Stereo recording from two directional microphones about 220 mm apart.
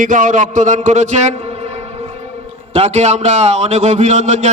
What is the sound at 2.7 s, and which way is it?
A man's voice, 30° right (ahead or behind).